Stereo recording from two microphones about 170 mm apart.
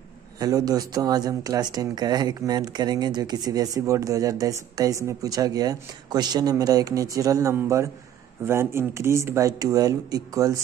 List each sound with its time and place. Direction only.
0.4 s speech: 20° right (ahead or behind)